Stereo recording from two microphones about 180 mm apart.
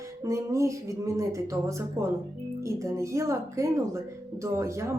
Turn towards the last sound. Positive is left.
turn(degrees=-15)  # may be behind; listen again after turning